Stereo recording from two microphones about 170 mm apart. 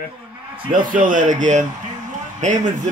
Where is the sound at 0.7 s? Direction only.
50° right (ahead or behind).